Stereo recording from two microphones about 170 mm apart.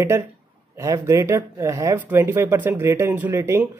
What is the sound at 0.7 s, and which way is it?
Speech, 15° right (ahead or behind).